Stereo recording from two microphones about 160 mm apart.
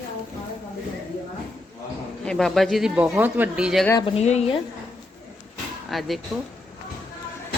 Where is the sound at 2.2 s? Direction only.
5° left (ahead or behind).